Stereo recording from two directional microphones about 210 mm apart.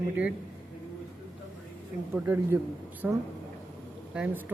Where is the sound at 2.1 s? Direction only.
10° right (ahead or behind).